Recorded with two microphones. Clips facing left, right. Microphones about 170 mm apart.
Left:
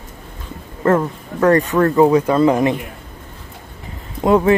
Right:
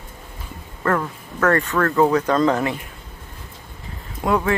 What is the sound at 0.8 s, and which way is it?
Speech, 20° left (ahead or behind).